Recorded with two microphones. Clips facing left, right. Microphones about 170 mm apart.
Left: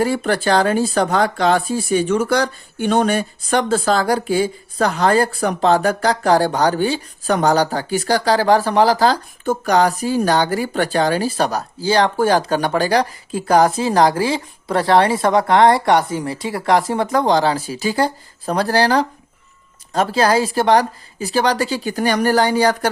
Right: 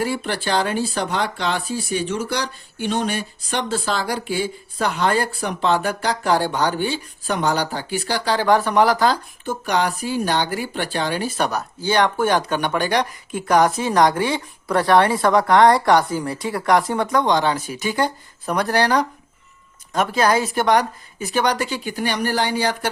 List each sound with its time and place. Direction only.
0.0 s speech: 45° left (ahead or behind)